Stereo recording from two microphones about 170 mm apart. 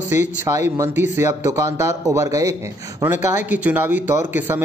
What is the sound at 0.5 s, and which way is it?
A man's voice, 15° right (ahead or behind).